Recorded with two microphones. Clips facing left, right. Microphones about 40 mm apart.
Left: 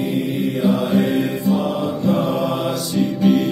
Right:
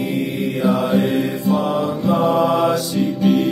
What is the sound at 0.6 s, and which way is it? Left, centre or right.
Mantra, right.